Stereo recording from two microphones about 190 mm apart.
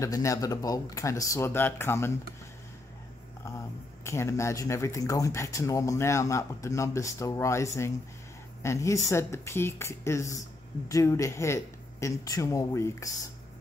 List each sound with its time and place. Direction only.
0.0 s speech: 15° left (ahead or behind)
3.4 s speech: 15° left (ahead or behind)